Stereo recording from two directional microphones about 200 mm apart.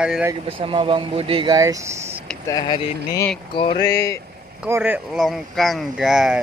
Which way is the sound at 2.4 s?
20° left (ahead or behind).